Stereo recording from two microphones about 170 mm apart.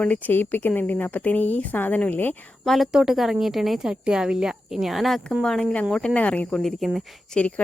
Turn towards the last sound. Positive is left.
turn(degrees=5)  # may be behind; listen again after turning